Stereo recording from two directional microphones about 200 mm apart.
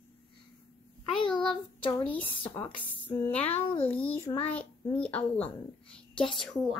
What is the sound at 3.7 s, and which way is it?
Speech, 30° left (ahead or behind).